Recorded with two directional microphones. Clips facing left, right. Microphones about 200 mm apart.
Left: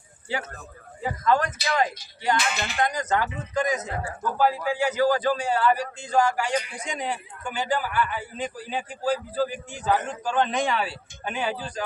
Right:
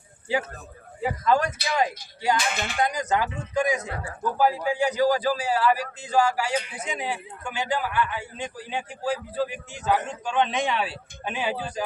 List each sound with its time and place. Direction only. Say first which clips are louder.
1.0 s a man's voice: right 1 dB; 10° right (ahead or behind)
3.8 s a man's voice: left 2 dB; 20° left (ahead or behind)
4.2 s a man's voice: right 1 dB; 15° right (ahead or behind)